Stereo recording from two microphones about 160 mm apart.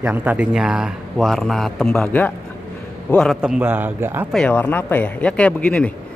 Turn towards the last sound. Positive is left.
turn(degrees=5)  # may be behind; listen again after turning